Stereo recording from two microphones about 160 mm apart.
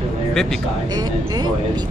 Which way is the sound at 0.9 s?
25° right (ahead or behind).